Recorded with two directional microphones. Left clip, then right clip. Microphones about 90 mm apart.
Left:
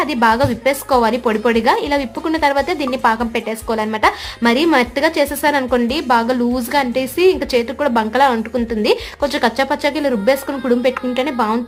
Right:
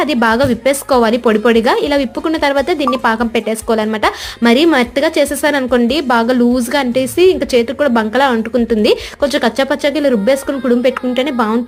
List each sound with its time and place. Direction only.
0.0 s a woman's voice: 40° right (ahead or behind)
8.7 s a woman's voice: 45° right (ahead or behind); by 11.3 s 25° right (ahead or behind)